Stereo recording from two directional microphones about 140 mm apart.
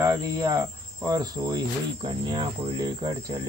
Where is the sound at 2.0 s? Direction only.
35° right (ahead or behind).